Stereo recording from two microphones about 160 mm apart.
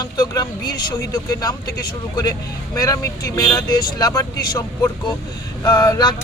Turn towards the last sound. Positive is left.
turn(degrees=25)  # may be behind; listen again after turning